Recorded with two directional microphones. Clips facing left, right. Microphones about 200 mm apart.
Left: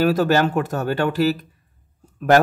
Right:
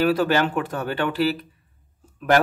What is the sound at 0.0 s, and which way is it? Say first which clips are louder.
A man's voice: left 2 dB; 40° left (ahead or behind).